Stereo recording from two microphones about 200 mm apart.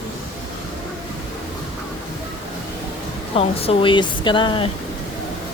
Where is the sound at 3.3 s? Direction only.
30° left (ahead or behind).